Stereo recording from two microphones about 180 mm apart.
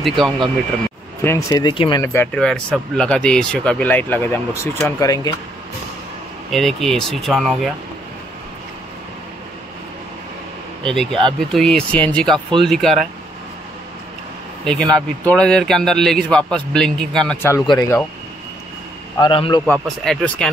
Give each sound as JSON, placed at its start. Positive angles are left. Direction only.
{"t": 1.2, "sound": "speech", "side_deg": 20}
{"t": 2.1, "sound": "speech", "side_deg": 5}
{"t": 6.5, "sound": "a man's voice", "side_deg": 0}
{"t": 10.9, "sound": "a man's voice", "side_deg": 0}
{"t": 14.6, "sound": "a man's voice", "side_deg": 5}
{"t": 19.1, "sound": "speech", "side_deg": 25}
{"t": 19.6, "sound": "a man's voice", "side_deg": 0}